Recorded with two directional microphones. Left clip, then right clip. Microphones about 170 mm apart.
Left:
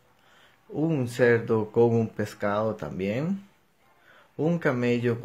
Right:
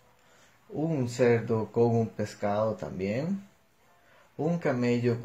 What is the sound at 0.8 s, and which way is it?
Speech, 25° left (ahead or behind).